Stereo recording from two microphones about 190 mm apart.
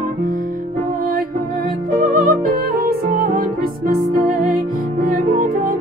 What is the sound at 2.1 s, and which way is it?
Music, 45° right (ahead or behind).